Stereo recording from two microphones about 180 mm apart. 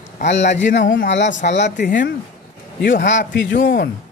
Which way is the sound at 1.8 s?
45° left (ahead or behind).